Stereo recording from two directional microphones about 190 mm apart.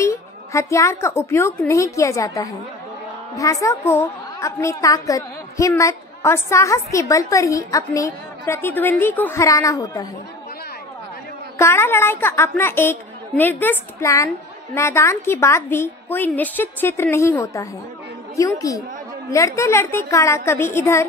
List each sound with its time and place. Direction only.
0.0 s a woman's voice: 15° left (ahead or behind)
11.5 s a woman's voice: 10° left (ahead or behind)